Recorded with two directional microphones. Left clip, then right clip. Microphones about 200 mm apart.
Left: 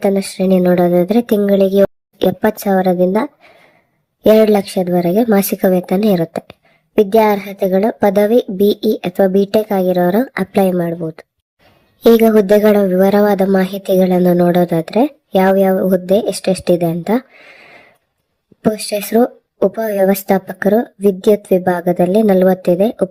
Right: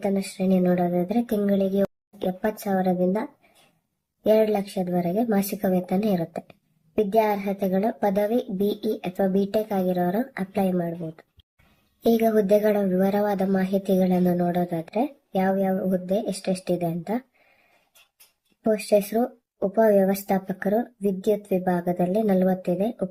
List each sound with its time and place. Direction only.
0.0 s speech: 45° left (ahead or behind)
4.3 s speech: 45° left (ahead or behind)
18.9 s speech: 40° left (ahead or behind)